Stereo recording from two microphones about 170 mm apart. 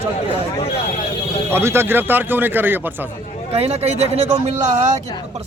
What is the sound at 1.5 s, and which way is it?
Speech, 15° right (ahead or behind).